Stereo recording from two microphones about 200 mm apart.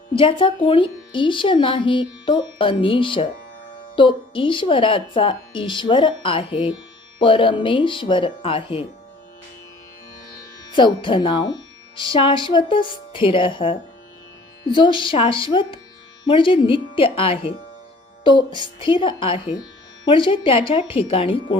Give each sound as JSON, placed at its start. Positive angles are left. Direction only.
{"t": 0.1, "sound": "speech", "side_deg": 25}
{"t": 10.7, "sound": "speech", "side_deg": 25}